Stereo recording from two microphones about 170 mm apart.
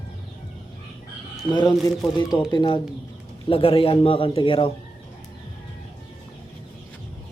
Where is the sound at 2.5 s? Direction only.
30° left (ahead or behind).